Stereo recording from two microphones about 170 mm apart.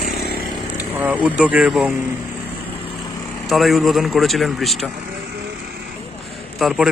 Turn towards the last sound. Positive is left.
turn(degrees=0)  # may be behind; listen again after turning